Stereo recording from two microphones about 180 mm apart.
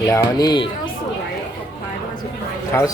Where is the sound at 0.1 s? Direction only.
20° left (ahead or behind).